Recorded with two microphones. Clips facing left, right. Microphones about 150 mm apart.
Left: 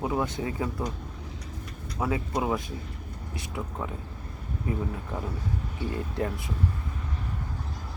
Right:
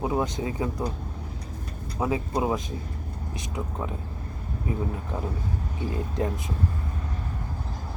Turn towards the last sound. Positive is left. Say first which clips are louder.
# right 2 dB
turn(degrees=-20)  # may be behind; listen again after turning